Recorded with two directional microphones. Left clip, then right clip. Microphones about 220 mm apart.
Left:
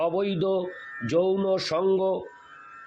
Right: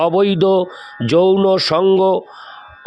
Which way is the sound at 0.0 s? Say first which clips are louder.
Right 12 dB; 50° right (ahead or behind).